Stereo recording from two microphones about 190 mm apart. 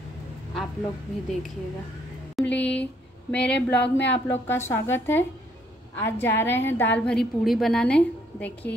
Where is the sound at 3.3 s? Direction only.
60° left (ahead or behind).